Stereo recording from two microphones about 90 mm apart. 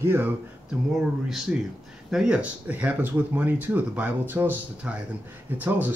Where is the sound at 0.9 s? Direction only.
5° right (ahead or behind).